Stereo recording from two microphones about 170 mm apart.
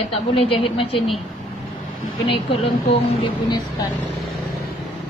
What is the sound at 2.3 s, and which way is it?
Speech, 30° left (ahead or behind).